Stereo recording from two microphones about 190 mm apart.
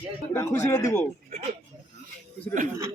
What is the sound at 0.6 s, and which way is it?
Speech, 15° left (ahead or behind).